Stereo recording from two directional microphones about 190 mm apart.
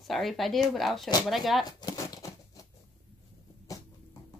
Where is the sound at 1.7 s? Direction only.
20° left (ahead or behind).